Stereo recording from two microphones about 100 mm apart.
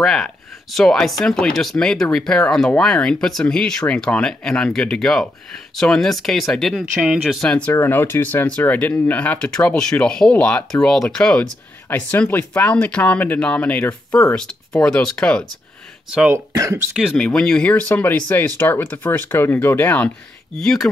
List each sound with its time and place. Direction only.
0.0 s speech: 5° left (ahead or behind)
7.0 s speech: 10° right (ahead or behind)
7.4 s speech: 10° left (ahead or behind)
7.7 s speech: 25° left (ahead or behind)
16.7 s speech: 5° right (ahead or behind)
17.2 s speech: 5° left (ahead or behind)
20.5 s speech: 5° left (ahead or behind)